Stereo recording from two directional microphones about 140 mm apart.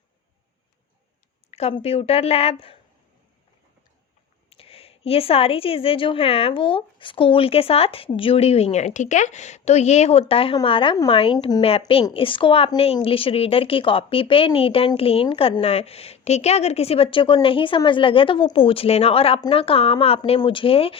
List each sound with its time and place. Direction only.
1.5 s a woman's voice: 45° left (ahead or behind)
4.4 s a woman's voice: 45° left (ahead or behind)